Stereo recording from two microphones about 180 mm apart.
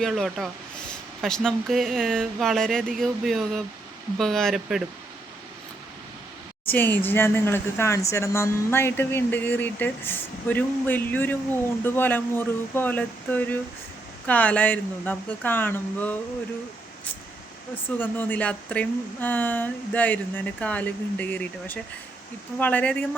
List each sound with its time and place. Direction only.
0.0 s speech: centre (ahead or behind)
6.7 s speech: 10° left (ahead or behind)
17.8 s speech: 10° left (ahead or behind)